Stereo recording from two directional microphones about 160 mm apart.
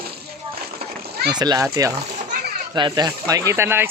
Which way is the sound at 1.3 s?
25° right (ahead or behind).